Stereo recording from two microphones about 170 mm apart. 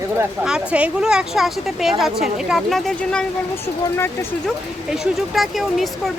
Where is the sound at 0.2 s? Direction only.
5° right (ahead or behind).